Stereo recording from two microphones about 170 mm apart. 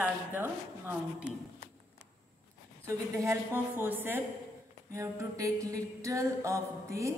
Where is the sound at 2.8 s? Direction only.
15° right (ahead or behind).